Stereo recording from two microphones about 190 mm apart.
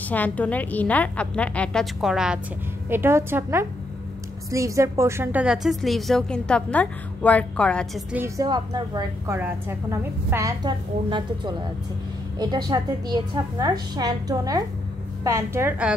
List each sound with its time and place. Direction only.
0.1 s a woman's voice: 10° left (ahead or behind)
8.1 s a woman's voice: 10° right (ahead or behind)
8.5 s a woman's voice: 20° right (ahead or behind)